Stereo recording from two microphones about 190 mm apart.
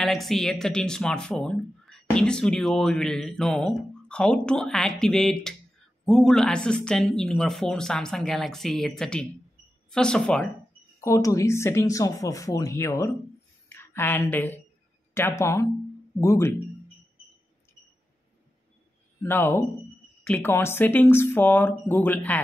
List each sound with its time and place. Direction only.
0.0 s speech: centre (ahead or behind)
11.1 s a woman's voice: 15° left (ahead or behind)
19.2 s speech: 10° left (ahead or behind)